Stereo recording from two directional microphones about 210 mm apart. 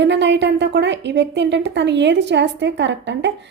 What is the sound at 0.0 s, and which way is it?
Speech, 55° right (ahead or behind).